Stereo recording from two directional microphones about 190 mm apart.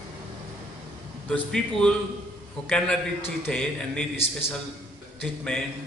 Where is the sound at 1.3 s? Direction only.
5° left (ahead or behind).